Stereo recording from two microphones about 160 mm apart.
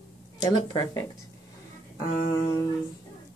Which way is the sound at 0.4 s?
25° left (ahead or behind).